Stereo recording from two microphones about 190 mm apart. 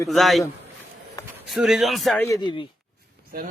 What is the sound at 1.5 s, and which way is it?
Speech, centre (ahead or behind).